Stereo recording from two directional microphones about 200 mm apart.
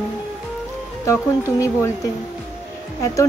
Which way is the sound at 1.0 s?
15° left (ahead or behind).